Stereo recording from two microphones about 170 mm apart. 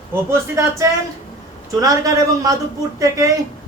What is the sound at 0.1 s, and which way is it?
A man's voice, 15° right (ahead or behind).